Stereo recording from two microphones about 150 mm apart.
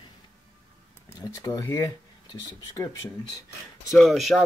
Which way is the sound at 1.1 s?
20° left (ahead or behind).